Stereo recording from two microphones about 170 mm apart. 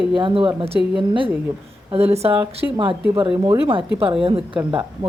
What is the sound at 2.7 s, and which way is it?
Speech, 30° right (ahead or behind).